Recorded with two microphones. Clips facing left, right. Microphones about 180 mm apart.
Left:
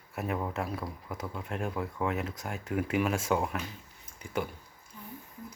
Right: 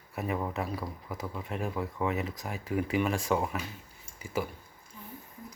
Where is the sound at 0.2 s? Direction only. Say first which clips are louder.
Right 1 dB; centre (ahead or behind).